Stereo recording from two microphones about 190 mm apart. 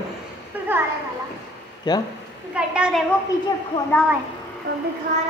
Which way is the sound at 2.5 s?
5° right (ahead or behind).